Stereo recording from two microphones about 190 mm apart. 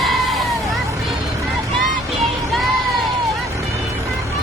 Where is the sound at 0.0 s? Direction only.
Centre (ahead or behind).